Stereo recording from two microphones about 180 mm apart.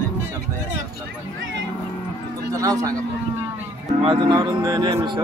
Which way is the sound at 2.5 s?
20° right (ahead or behind).